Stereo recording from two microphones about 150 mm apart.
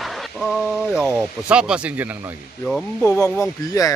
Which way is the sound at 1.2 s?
5° right (ahead or behind).